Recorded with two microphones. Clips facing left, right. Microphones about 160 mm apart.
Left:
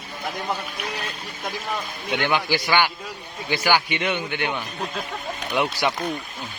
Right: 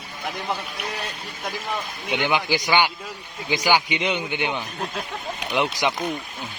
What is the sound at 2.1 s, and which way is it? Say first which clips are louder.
Speech: even; 15° right (ahead or behind).